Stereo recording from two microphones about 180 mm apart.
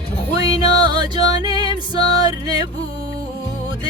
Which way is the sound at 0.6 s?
25° right (ahead or behind).